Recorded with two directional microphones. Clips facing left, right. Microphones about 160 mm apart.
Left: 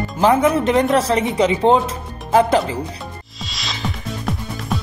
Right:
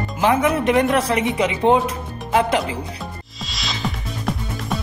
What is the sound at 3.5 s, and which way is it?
Music, centre (ahead or behind).